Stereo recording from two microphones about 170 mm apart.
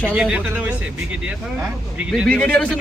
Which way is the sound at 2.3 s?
5° left (ahead or behind).